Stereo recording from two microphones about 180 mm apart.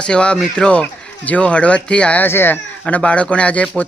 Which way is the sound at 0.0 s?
5° left (ahead or behind).